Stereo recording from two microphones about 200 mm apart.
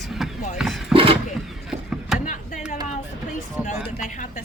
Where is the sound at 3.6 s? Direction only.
40° left (ahead or behind).